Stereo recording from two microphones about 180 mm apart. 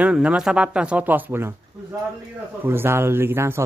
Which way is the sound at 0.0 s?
5° right (ahead or behind).